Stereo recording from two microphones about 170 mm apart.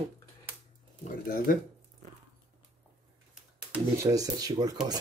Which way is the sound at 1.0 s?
55° left (ahead or behind).